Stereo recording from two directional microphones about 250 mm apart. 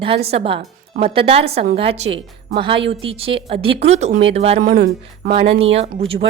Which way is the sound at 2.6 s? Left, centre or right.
Right.